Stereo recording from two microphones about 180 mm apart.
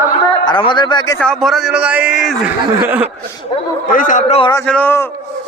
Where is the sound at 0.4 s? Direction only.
25° left (ahead or behind).